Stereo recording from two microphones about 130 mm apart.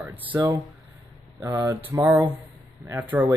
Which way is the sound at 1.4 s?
25° right (ahead or behind).